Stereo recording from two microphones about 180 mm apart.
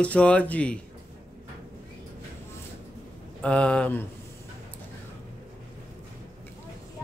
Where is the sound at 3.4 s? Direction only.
5° left (ahead or behind).